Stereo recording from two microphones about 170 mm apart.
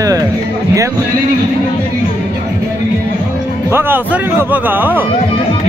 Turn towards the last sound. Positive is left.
turn(degrees=-10)  # may be behind; listen again after turning